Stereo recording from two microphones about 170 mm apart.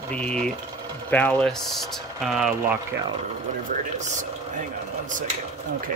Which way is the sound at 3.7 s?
45° right (ahead or behind).